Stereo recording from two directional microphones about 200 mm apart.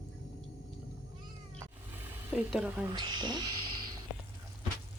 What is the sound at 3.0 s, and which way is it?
Speech, 20° right (ahead or behind).